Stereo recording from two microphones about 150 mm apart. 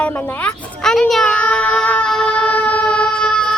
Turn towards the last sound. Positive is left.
turn(degrees=5)  # may be behind; listen again after turning